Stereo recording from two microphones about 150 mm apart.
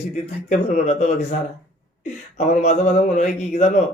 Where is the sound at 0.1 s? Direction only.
50° left (ahead or behind).